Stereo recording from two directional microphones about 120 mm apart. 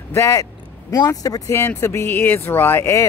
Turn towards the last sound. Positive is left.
turn(degrees=20)  # may be behind; listen again after turning